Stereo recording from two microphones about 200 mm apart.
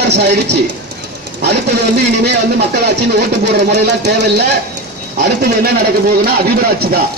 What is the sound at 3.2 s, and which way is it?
Speech, 55° right (ahead or behind).